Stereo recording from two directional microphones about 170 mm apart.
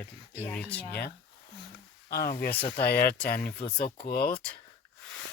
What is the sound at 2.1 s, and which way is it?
Speech, 65° left (ahead or behind).